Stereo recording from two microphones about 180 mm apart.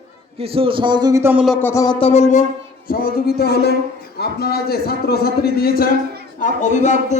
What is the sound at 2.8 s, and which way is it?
A man's voice, 55° left (ahead or behind).